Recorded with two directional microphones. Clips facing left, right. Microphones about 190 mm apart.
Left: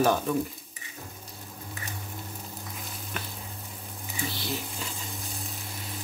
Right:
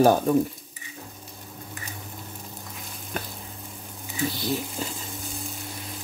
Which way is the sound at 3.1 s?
40° right (ahead or behind).